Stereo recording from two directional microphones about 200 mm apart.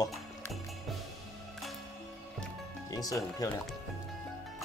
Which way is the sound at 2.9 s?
20° left (ahead or behind).